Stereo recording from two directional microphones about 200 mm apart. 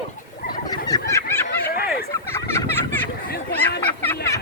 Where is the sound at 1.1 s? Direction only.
15° left (ahead or behind).